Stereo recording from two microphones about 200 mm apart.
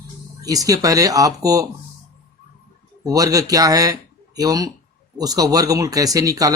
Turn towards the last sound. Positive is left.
turn(degrees=-15)  # may be behind; listen again after turning